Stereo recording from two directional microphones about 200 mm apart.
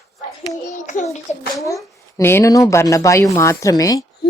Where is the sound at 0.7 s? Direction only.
40° left (ahead or behind).